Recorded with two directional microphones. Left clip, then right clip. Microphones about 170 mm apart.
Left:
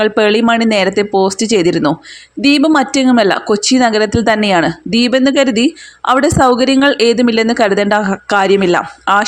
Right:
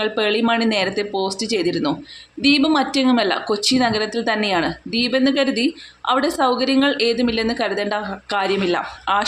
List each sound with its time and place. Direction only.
0.0 s speech: 40° left (ahead or behind)